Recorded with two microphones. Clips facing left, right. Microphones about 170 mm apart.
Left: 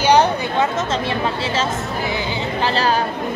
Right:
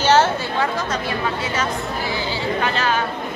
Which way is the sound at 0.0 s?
15° left (ahead or behind).